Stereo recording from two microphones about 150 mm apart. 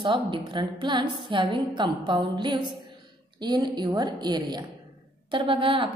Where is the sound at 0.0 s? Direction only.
30° right (ahead or behind).